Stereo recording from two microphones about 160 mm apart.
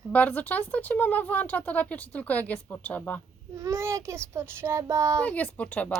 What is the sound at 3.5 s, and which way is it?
Child singing, 15° right (ahead or behind).